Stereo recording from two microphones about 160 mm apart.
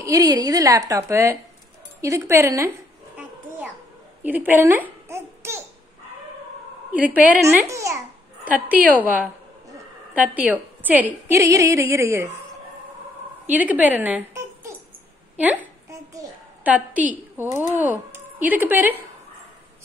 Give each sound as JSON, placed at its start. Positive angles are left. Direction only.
{"t": 0.0, "sound": "a woman's voice", "side_deg": -20}
{"t": 4.2, "sound": "a sound", "side_deg": -10}
{"t": 6.9, "sound": "a woman's voice", "side_deg": -10}
{"t": 8.5, "sound": "a woman's voice", "side_deg": -10}
{"t": 10.1, "sound": "a woman's voice", "side_deg": -10}
{"t": 13.5, "sound": "a woman's voice", "side_deg": -10}
{"t": 15.9, "sound": "a sound", "side_deg": -20}
{"t": 16.6, "sound": "a woman's voice", "side_deg": -10}